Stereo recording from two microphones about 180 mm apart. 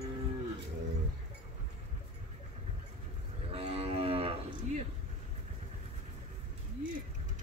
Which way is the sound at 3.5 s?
35° right (ahead or behind).